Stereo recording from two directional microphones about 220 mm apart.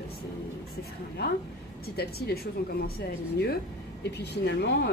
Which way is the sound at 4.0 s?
50° left (ahead or behind).